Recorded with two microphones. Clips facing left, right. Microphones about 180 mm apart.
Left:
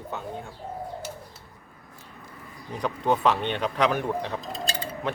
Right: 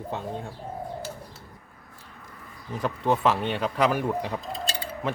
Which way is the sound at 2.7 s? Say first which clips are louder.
Even; centre (ahead or behind).